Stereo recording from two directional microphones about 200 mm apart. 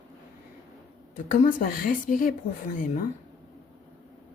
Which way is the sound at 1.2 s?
40° left (ahead or behind).